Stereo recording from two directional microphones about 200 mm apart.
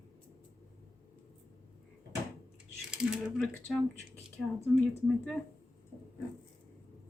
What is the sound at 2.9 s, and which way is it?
Speech, centre (ahead or behind).